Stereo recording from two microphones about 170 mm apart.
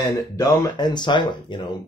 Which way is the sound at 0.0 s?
25° left (ahead or behind).